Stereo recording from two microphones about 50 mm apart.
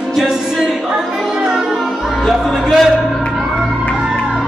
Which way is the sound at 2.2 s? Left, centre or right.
Centre.